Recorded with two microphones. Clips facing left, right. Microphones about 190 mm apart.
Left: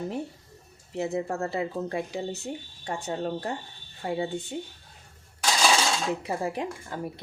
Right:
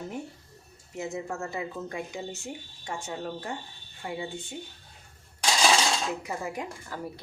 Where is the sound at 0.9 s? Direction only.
35° left (ahead or behind).